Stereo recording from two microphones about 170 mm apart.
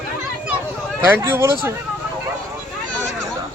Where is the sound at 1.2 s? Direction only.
15° right (ahead or behind).